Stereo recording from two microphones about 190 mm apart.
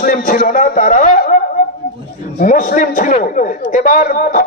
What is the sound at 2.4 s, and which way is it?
A man's voice, 45° left (ahead or behind).